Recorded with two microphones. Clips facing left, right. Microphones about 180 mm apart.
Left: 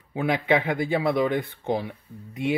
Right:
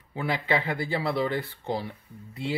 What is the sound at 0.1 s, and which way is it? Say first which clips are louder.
Speech: left 5 dB; 20° left (ahead or behind).